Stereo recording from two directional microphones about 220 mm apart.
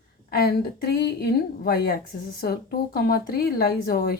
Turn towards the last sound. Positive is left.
turn(degrees=45)  # may be behind; listen again after turning